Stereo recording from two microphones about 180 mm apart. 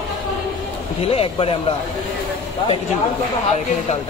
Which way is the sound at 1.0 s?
30° left (ahead or behind).